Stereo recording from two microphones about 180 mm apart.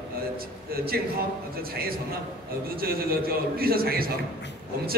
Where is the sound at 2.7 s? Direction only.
55° right (ahead or behind).